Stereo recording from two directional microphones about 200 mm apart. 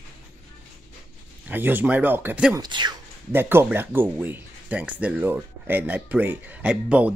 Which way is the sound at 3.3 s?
10° right (ahead or behind).